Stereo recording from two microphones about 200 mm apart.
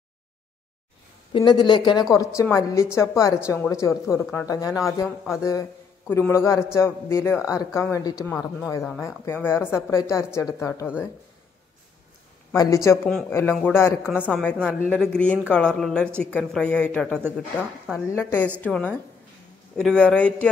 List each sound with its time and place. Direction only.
1.3 s a woman's voice: 25° left (ahead or behind)
5.0 s speech: centre (ahead or behind)
5.4 s a man's voice: 15° left (ahead or behind)
12.5 s a man's voice: 15° left (ahead or behind); by 18.0 s centre (ahead or behind)
18.1 s a man's voice: 10° left (ahead or behind)